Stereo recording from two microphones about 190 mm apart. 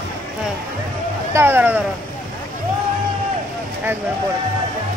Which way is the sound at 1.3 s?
15° right (ahead or behind).